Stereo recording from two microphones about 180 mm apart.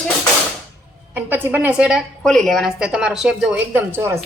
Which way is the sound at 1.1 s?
10° right (ahead or behind).